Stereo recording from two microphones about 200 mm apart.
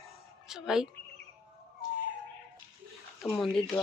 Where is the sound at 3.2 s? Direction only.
Centre (ahead or behind).